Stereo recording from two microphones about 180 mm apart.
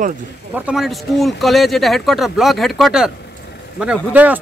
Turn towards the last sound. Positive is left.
turn(degrees=-10)  # may be behind; listen again after turning